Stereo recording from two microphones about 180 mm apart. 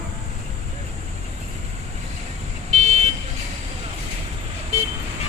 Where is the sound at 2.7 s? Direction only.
40° right (ahead or behind).